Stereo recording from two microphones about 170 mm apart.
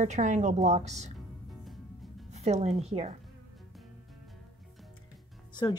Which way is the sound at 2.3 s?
40° right (ahead or behind).